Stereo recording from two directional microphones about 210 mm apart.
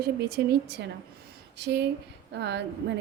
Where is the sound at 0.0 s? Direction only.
50° right (ahead or behind).